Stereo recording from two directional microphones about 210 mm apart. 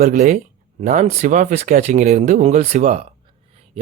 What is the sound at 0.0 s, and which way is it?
Speech, 40° right (ahead or behind).